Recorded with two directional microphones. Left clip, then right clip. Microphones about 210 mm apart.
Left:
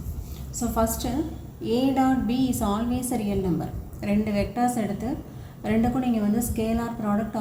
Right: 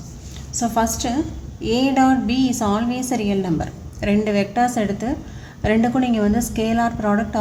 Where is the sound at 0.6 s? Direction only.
50° right (ahead or behind).